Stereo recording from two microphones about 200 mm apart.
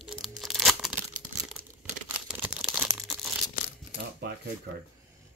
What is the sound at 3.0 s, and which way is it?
Tearing, centre (ahead or behind).